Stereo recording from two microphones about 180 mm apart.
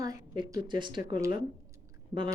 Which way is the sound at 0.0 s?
20° right (ahead or behind).